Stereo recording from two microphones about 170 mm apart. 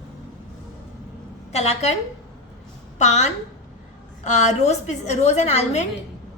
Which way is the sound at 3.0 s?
45° left (ahead or behind).